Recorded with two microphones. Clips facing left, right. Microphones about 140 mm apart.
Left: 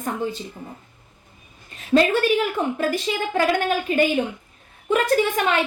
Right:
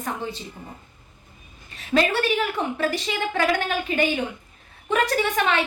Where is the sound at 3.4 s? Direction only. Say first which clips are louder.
Left 3 dB; 45° left (ahead or behind).